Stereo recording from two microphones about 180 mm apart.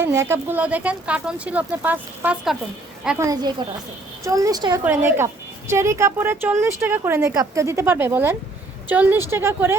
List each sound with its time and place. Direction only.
0.0 s a woman's voice: 15° right (ahead or behind)
3.2 s a woman's voice: 20° right (ahead or behind)